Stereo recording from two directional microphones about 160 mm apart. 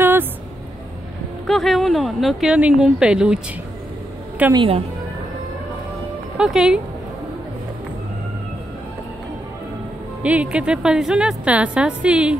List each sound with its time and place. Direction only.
0.0 s a sound: 15° right (ahead or behind)
1.5 s speech: centre (ahead or behind)
4.6 s a woman's voice: 35° right (ahead or behind)
6.3 s speech: 5° right (ahead or behind)
10.2 s a woman's voice: 10° right (ahead or behind)